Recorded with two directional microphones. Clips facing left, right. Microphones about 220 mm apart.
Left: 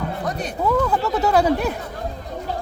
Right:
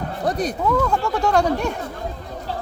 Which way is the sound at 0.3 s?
35° right (ahead or behind).